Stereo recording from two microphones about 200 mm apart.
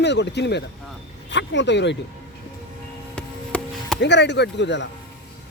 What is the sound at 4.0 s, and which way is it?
Speech, 60° left (ahead or behind).